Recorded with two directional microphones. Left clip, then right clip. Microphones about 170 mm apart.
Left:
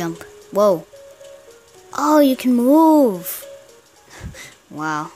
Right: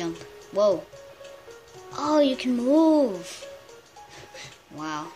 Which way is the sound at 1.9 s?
50° left (ahead or behind).